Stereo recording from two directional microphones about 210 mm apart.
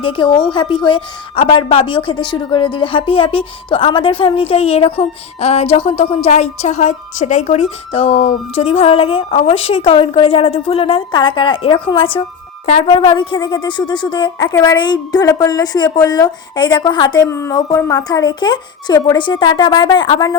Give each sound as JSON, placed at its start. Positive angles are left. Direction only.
{"t": 0.0, "sound": "a woman's voice", "side_deg": 25}